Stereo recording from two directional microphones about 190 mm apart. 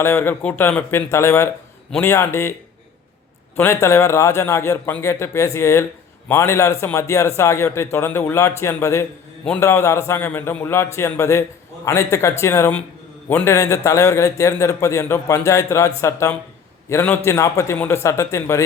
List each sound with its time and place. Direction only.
0.0 s a man's voice: 10° left (ahead or behind)
3.6 s a man's voice: 15° left (ahead or behind)